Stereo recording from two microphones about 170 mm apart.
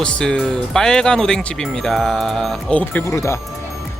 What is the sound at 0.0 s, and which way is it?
Speech, 5° left (ahead or behind).